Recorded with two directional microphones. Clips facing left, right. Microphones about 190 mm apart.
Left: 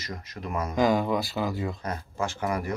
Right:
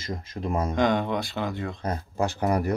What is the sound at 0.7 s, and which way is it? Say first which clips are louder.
Speech: left 2 dB; 5° left (ahead or behind).